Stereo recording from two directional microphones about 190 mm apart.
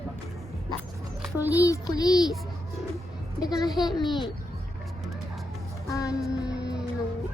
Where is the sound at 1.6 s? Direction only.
20° left (ahead or behind).